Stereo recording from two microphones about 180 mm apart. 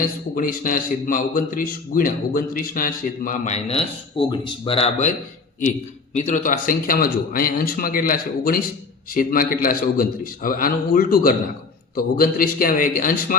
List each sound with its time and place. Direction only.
0.3 s a man's voice: 50° left (ahead or behind)
6.1 s a man's voice: 40° left (ahead or behind)